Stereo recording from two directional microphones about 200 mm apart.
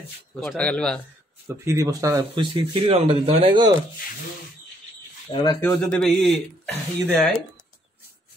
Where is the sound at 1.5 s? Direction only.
15° right (ahead or behind).